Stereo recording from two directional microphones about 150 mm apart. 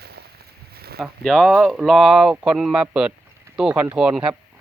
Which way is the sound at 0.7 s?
90° right.